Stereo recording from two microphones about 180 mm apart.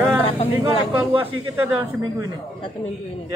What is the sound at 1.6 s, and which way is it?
Speech, 10° right (ahead or behind).